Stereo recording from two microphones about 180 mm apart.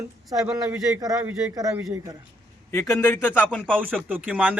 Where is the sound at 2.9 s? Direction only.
10° left (ahead or behind).